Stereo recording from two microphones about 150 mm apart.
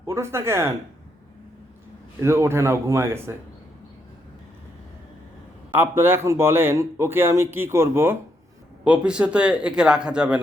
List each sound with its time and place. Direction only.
0.0 s speech: 20° right (ahead or behind)
2.2 s speech: 15° right (ahead or behind)
5.7 s speech: 15° right (ahead or behind)